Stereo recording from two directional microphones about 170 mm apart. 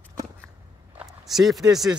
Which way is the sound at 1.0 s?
Centre (ahead or behind).